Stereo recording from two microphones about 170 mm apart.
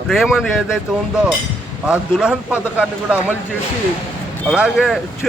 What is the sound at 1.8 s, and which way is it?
A man's voice, 5° right (ahead or behind).